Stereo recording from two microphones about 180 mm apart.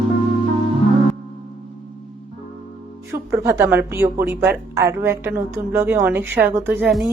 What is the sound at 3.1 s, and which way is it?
A woman's voice, 15° right (ahead or behind).